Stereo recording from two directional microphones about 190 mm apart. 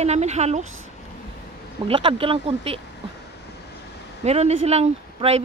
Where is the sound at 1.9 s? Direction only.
30° right (ahead or behind).